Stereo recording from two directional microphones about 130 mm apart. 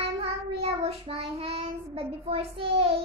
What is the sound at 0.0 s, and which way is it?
Child singing, 50° right (ahead or behind).